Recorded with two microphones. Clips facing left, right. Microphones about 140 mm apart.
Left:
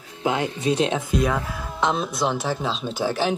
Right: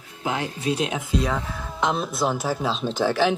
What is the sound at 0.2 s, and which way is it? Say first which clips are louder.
Speech: left 4 dB; 20° left (ahead or behind).